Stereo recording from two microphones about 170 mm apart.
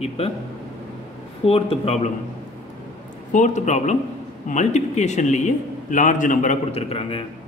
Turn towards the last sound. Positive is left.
turn(degrees=35)  # may be behind; listen again after turning